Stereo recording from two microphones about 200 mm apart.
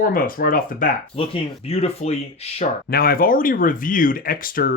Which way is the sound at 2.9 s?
45° left (ahead or behind).